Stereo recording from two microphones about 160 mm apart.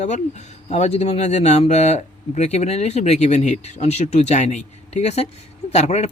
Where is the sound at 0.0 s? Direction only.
45° left (ahead or behind).